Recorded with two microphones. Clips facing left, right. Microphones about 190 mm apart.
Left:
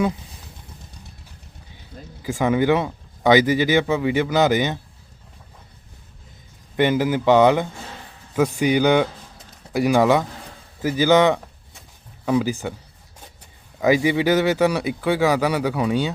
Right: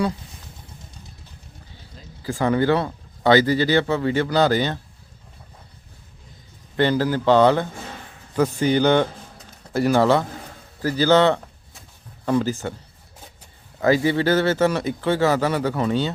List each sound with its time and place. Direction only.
2.2 s a man's voice: 15° left (ahead or behind)
6.7 s a man's voice: 15° left (ahead or behind)
13.8 s a man's voice: 15° left (ahead or behind)